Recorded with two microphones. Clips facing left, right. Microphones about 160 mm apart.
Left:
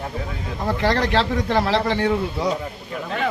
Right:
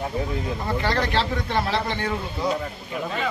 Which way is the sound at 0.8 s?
90° left.